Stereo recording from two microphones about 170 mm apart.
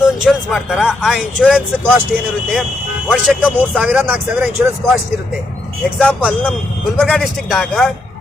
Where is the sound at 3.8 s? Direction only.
5° right (ahead or behind).